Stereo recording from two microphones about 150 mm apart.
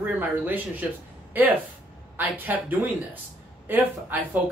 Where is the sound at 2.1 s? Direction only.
10° right (ahead or behind).